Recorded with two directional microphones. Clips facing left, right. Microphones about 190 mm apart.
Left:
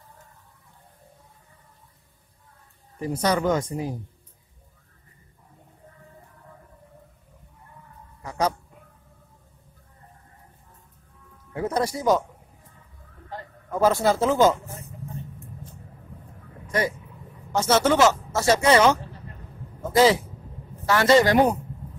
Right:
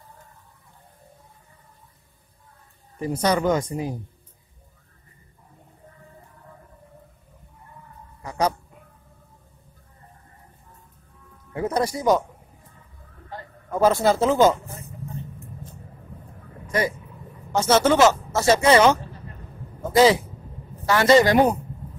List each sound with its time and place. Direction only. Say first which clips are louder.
3.0 s speech: right 1 dB; 20° right (ahead or behind)
8.2 s dog: right 1 dB; 15° right (ahead or behind)
11.5 s music: right 1 dB; 15° right (ahead or behind)
13.7 s a man's voice: right 2 dB; 20° right (ahead or behind)
17.5 s a man's voice: right 2 dB; 20° right (ahead or behind)
20.0 s speech: right 2 dB; 15° right (ahead or behind)